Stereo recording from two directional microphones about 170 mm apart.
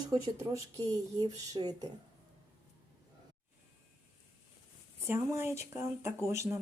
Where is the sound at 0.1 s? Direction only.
20° right (ahead or behind).